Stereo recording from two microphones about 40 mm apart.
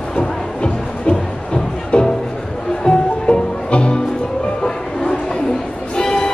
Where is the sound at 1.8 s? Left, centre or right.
Left.